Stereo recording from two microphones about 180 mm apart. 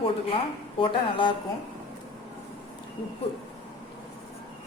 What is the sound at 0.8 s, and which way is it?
Speech, 25° left (ahead or behind).